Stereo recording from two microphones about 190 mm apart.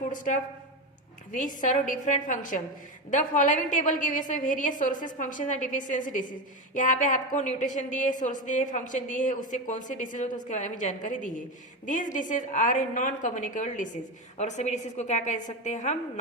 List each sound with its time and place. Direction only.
1.3 s a woman's voice: 40° left (ahead or behind)